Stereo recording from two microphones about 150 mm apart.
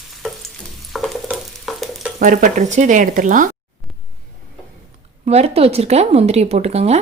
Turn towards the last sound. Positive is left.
turn(degrees=-45)  # may be behind; listen again after turning